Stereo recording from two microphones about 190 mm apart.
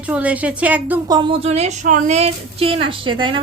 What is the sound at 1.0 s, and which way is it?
A woman's voice, 25° right (ahead or behind).